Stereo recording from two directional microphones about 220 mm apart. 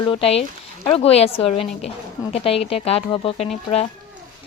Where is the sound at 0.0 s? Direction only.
25° left (ahead or behind).